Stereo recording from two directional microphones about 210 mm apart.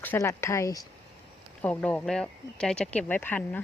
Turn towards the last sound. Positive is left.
turn(degrees=10)  # may be behind; listen again after turning